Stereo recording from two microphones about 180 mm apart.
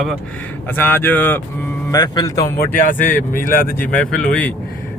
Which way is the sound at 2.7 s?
50° left (ahead or behind).